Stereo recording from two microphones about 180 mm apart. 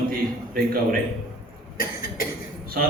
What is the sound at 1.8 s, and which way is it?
Cough, 50° left (ahead or behind).